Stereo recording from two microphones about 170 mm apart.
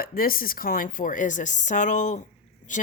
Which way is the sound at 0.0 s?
60° left (ahead or behind).